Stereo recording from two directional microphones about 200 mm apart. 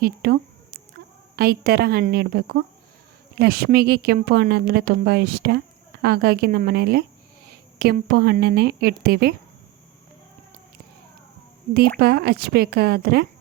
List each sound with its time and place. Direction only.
0.0 s a sound: 50° right (ahead or behind)
1.4 s a woman's voice: 50° right (ahead or behind)
11.9 s a woman's voice: 50° right (ahead or behind)